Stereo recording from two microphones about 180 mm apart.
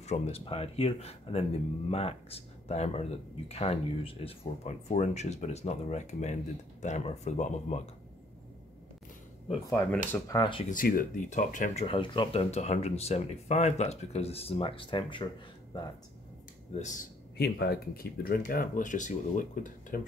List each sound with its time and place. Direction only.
0.0 s speech: 35° left (ahead or behind)
9.7 s speech: 15° left (ahead or behind)
10.7 s speech: 50° left (ahead or behind); by 15.2 s 25° left (ahead or behind)
16.7 s speech: 40° left (ahead or behind)
17.4 s speech: 60° left (ahead or behind)